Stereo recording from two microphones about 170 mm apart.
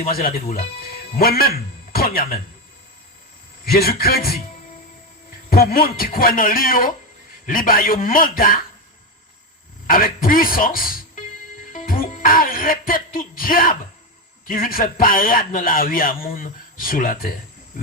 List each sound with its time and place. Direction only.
0.0 s a man's voice: 60° left (ahead or behind)
3.7 s a man's voice: 60° left (ahead or behind)
5.5 s a man's voice: 60° left (ahead or behind)
9.8 s speech: 55° left (ahead or behind)
11.7 s music: 50° left (ahead or behind)
14.4 s a man's voice: 55° left (ahead or behind)